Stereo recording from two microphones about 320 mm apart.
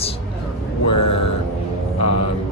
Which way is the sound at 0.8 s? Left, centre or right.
Left.